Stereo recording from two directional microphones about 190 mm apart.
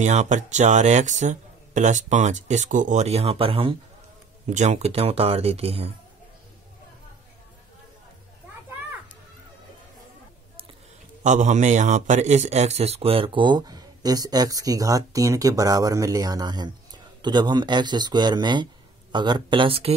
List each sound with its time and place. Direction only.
0.0 s speech: 40° right (ahead or behind)
11.2 s a man's voice: 40° right (ahead or behind)